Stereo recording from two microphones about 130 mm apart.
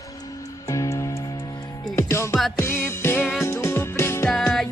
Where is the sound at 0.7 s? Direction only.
25° left (ahead or behind).